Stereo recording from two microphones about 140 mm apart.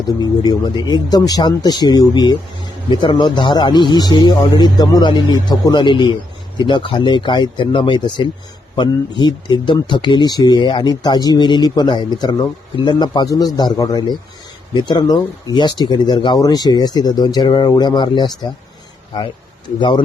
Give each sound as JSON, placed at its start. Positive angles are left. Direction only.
{"t": 0.2, "sound": "speech", "side_deg": 30}